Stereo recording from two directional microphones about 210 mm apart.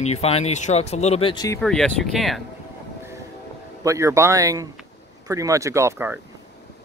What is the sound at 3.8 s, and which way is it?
Speech, 15° right (ahead or behind).